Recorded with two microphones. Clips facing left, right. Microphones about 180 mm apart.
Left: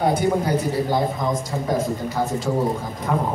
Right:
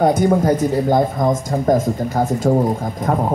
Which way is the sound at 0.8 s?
45° right (ahead or behind).